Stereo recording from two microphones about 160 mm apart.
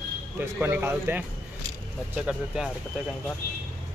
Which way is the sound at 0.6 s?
15° right (ahead or behind).